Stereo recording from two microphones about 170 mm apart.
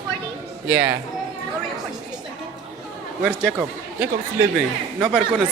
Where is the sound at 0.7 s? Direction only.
10° right (ahead or behind).